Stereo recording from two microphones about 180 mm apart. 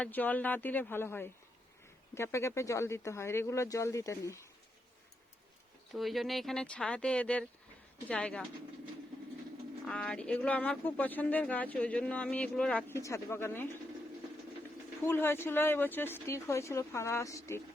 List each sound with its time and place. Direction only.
0.0 s speech: 10° left (ahead or behind)
5.9 s speech: centre (ahead or behind)
9.8 s speech: 5° left (ahead or behind)
15.0 s speech: 10° left (ahead or behind)